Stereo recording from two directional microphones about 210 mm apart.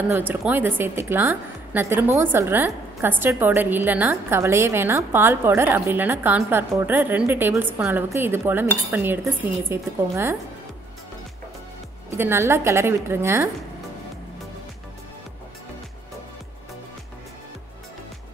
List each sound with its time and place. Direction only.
0.1 s a woman's voice: 10° right (ahead or behind)
12.2 s a woman's voice: 10° right (ahead or behind)